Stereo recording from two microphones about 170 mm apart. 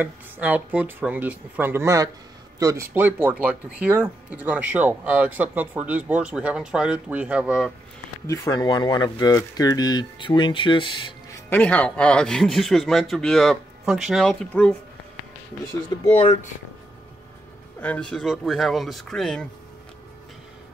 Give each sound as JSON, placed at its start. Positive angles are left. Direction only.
{"t": 0.0, "sound": "speech", "side_deg": -10}
{"t": 8.3, "sound": "speech", "side_deg": 20}
{"t": 11.3, "sound": "speech", "side_deg": 10}
{"t": 16.2, "sound": "speech", "side_deg": 40}
{"t": 17.7, "sound": "speech", "side_deg": 10}